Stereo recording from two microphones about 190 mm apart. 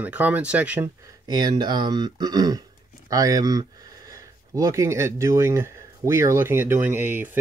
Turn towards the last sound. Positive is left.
turn(degrees=-10)  # may be behind; listen again after turning